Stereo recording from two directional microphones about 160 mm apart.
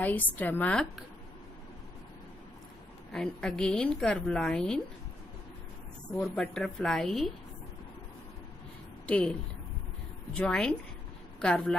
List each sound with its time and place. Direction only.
0.0 s a woman's voice: 10° left (ahead or behind)
3.1 s a woman's voice: 5° left (ahead or behind)
6.1 s a woman's voice: 5° left (ahead or behind)
9.0 s a woman's voice: 5° left (ahead or behind)